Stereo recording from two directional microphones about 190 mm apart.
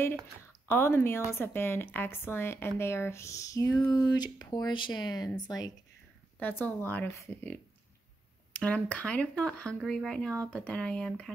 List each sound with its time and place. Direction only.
0.7 s a woman's voice: 10° left (ahead or behind)
6.4 s a woman's voice: 10° left (ahead or behind)
8.5 s a woman's voice: 5° left (ahead or behind)